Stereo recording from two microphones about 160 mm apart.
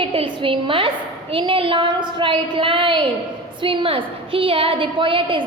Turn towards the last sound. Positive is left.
turn(degrees=-30)  # may be behind; listen again after turning